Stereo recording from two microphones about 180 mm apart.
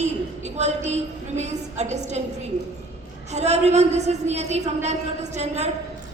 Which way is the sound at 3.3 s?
40° right (ahead or behind).